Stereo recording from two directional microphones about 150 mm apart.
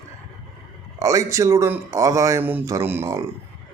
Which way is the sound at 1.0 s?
20° right (ahead or behind).